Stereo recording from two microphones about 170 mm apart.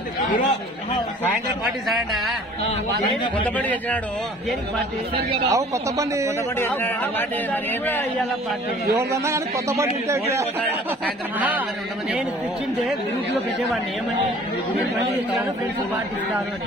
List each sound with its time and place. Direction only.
2.7 s a man's voice: 30° left (ahead or behind)
3.4 s a man's voice: 10° left (ahead or behind)
5.5 s a man's voice: 20° right (ahead or behind)
6.5 s a man's voice: 15° left (ahead or behind)
8.9 s a man's voice: 15° right (ahead or behind)